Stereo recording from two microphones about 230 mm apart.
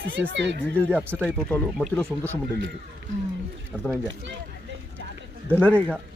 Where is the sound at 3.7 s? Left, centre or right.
Centre.